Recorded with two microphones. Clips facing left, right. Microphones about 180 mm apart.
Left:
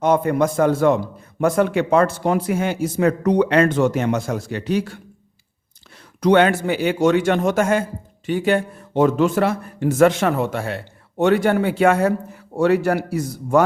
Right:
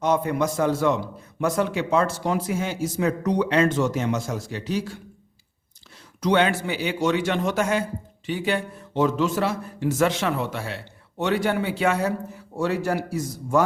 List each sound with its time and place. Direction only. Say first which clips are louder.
0.0 s a man's voice: left 5 dB; 55° left (ahead or behind)
6.1 s a man's voice: left 6 dB; 55° left (ahead or behind)
12.5 s a man's voice: left 7 dB; 65° left (ahead or behind)